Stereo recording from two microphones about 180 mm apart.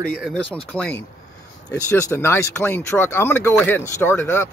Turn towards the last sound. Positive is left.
turn(degrees=15)  # may be behind; listen again after turning